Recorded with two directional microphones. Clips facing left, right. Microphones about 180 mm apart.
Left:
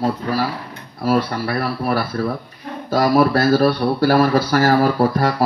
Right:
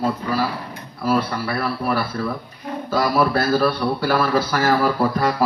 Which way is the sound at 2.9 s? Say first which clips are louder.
Left 4 dB; 40° left (ahead or behind).